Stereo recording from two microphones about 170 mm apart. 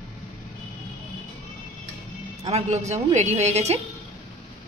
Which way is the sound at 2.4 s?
40° right (ahead or behind).